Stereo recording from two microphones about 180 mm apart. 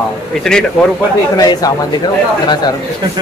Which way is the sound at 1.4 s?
20° left (ahead or behind).